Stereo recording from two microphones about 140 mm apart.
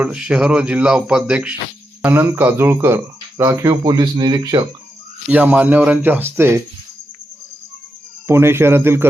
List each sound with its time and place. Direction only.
0.0 s a man's voice: 10° right (ahead or behind)
3.4 s speech: 25° right (ahead or behind)
5.3 s speech: 10° right (ahead or behind)
8.3 s speech: 20° right (ahead or behind)